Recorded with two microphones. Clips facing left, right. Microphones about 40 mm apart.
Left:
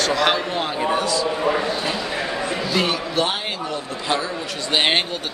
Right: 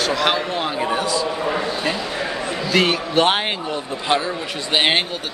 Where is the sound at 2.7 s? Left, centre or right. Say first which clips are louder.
Right 5 dB; right.